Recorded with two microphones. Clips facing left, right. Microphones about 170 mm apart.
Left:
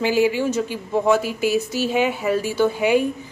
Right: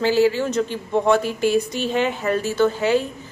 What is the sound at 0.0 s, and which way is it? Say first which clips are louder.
A woman's voice: right 1 dB; 15° left (ahead or behind).